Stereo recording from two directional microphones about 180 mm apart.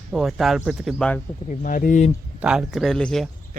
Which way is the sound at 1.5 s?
50° left (ahead or behind).